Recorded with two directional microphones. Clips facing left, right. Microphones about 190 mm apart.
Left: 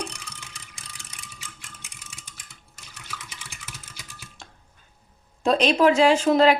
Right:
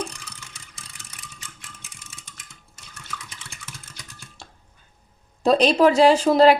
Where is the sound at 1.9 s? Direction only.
Centre (ahead or behind).